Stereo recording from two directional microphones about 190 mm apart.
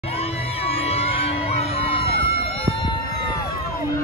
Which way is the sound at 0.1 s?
30° left (ahead or behind).